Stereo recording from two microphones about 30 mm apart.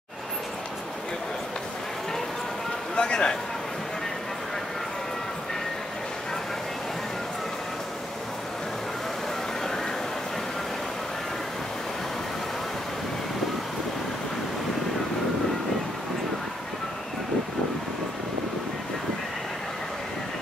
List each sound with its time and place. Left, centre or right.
3.0 s a man's voice: left